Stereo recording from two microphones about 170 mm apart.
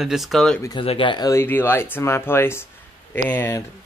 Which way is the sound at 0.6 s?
20° left (ahead or behind).